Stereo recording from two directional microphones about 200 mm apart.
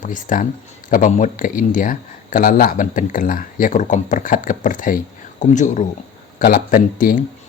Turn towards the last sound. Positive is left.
turn(degrees=45)  # may be behind; listen again after turning